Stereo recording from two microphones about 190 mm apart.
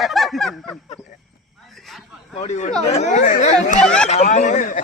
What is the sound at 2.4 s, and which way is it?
Speech, 35° left (ahead or behind).